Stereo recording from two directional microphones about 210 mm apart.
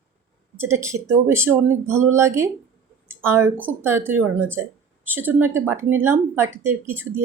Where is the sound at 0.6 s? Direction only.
10° right (ahead or behind).